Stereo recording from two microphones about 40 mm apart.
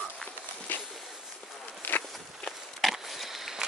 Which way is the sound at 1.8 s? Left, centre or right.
Left.